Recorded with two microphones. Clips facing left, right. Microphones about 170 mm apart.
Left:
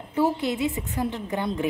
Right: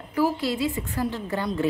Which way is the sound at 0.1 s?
20° left (ahead or behind).